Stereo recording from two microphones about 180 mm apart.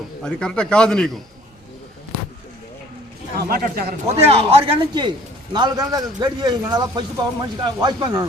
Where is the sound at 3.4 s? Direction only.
55° right (ahead or behind).